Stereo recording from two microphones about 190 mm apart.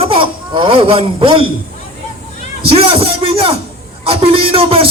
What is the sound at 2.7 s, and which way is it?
Speech, 30° right (ahead or behind).